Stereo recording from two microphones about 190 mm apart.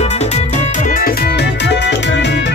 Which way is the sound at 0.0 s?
35° left (ahead or behind).